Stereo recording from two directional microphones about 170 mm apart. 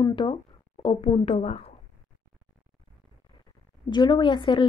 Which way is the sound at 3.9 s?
25° left (ahead or behind).